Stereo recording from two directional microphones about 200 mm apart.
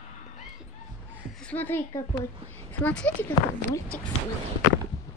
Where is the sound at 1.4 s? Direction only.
10° left (ahead or behind).